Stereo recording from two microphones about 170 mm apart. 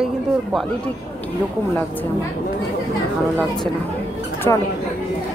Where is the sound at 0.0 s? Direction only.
5° right (ahead or behind).